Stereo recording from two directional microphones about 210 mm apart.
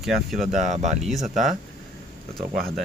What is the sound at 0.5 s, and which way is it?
Speech, 35° right (ahead or behind).